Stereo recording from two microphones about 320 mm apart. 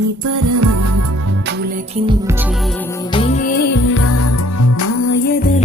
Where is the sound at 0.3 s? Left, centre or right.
Right.